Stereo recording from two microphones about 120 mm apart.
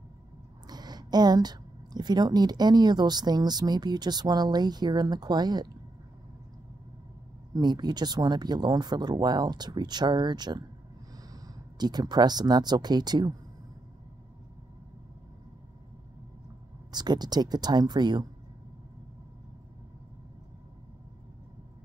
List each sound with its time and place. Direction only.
0.7 s a woman's voice: 35° right (ahead or behind)
7.5 s speech: 35° right (ahead or behind)
16.9 s speech: 35° right (ahead or behind)